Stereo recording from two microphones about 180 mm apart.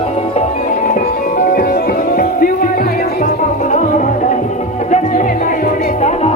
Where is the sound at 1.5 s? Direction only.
55° left (ahead or behind).